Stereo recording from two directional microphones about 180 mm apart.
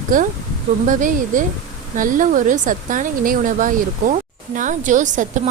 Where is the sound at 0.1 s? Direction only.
50° right (ahead or behind).